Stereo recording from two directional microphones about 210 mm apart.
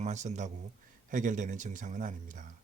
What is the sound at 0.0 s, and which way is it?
Speech, 35° right (ahead or behind).